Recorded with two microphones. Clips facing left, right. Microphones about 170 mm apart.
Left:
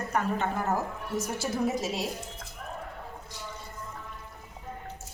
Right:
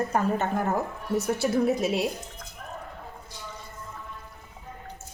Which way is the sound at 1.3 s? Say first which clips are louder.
Right 4 dB; 60° right (ahead or behind).